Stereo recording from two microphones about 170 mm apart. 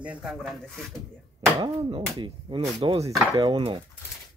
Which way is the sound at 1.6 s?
30° right (ahead or behind).